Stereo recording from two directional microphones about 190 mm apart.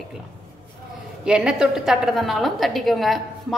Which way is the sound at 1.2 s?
5° right (ahead or behind).